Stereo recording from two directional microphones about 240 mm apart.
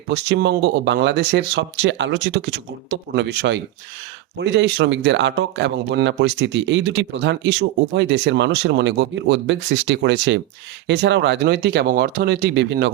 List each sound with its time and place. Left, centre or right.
0.1 s speech: right